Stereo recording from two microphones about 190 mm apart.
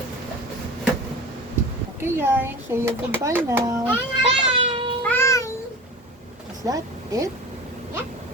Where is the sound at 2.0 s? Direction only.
10° right (ahead or behind).